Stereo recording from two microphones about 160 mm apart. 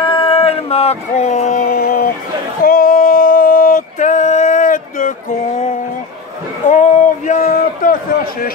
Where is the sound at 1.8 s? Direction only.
70° left (ahead or behind).